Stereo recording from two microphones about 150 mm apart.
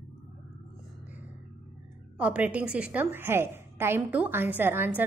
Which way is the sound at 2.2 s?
10° right (ahead or behind).